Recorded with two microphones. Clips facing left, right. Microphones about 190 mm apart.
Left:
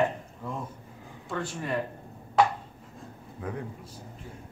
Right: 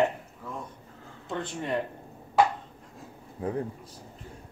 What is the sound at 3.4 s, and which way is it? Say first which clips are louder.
Speech: right 5 dB; 30° right (ahead or behind).